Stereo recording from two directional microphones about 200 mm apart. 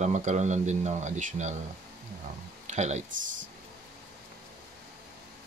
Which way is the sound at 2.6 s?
35° right (ahead or behind).